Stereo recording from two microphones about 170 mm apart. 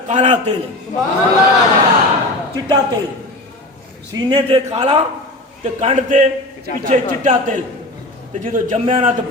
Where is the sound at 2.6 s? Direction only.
25° right (ahead or behind).